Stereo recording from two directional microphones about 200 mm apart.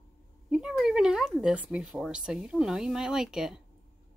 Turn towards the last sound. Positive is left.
turn(degrees=0)  # may be behind; listen again after turning